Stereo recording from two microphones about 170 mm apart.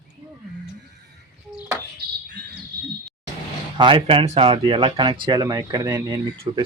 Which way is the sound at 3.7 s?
30° right (ahead or behind).